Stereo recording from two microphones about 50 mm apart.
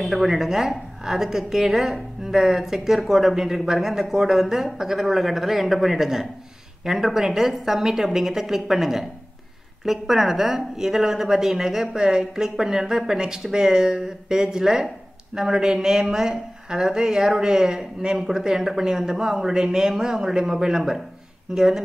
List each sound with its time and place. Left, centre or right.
0.0 s a woman's voice: centre